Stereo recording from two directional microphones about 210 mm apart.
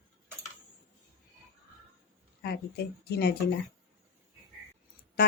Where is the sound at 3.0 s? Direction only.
50° left (ahead or behind).